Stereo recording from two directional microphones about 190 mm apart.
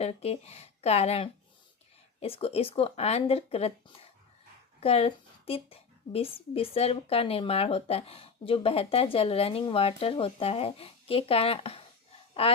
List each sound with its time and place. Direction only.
0.0 s speech: 30° left (ahead or behind)
4.8 s speech: 30° left (ahead or behind)